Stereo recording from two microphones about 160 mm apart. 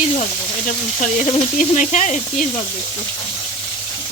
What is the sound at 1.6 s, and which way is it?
Speech, 50° left (ahead or behind).